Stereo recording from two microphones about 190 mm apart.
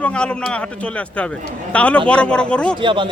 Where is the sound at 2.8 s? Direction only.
25° right (ahead or behind).